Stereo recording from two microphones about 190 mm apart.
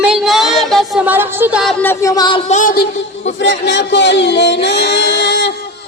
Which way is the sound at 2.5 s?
45° left (ahead or behind).